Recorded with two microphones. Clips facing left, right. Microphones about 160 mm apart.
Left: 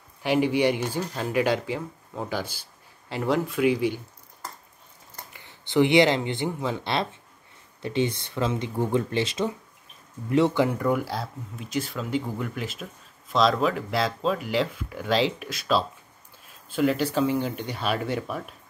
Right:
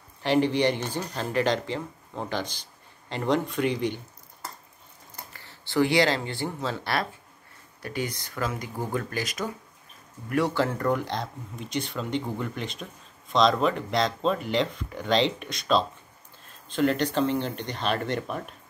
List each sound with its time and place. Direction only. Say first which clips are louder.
0.2 s speech: left 1 dB; 10° left (ahead or behind)
5.3 s speech: left 3 dB; 15° left (ahead or behind)